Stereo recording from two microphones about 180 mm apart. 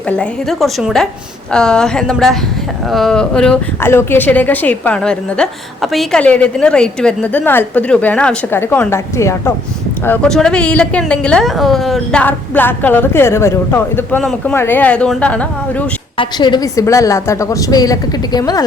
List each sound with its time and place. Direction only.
0.2 s a woman's voice: centre (ahead or behind)
10.1 s speech: 5° left (ahead or behind)
16.1 s a woman's voice: 25° left (ahead or behind)